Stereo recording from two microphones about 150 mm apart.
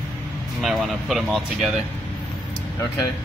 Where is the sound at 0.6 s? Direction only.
Centre (ahead or behind).